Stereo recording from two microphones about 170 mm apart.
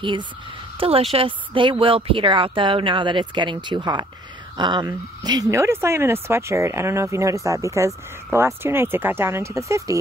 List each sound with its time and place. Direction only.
0.7 s speech: 35° right (ahead or behind); by 9.9 s 15° right (ahead or behind)